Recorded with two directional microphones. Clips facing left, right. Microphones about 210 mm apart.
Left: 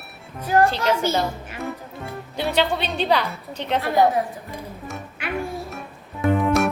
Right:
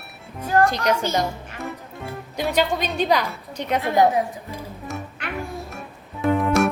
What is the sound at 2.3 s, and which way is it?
A woman's voice, 10° right (ahead or behind).